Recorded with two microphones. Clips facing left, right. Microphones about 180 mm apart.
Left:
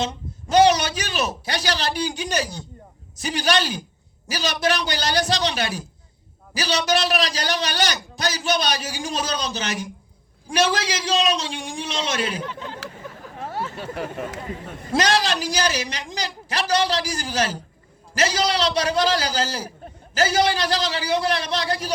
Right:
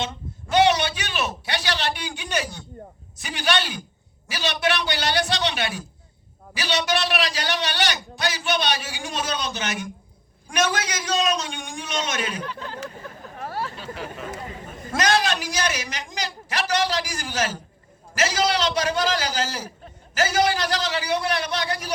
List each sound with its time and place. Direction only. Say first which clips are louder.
0.0 s a man's voice: left 3 dB; 40° left (ahead or behind)
12.4 s speech: left 1 dB; 20° left (ahead or behind)
13.4 s a sound: left 1 dB; 20° left (ahead or behind)
13.7 s speech: left 5 dB; 55° left (ahead or behind)
14.9 s a man's voice: left 1 dB; 35° left (ahead or behind)